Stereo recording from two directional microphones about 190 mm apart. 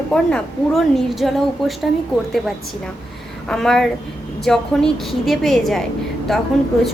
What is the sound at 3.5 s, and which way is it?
A woman's voice, centre (ahead or behind).